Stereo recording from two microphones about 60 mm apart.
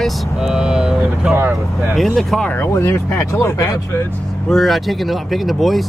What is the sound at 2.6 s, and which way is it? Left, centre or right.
Speech, left.